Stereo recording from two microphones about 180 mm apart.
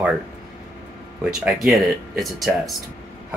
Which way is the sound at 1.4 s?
Centre (ahead or behind).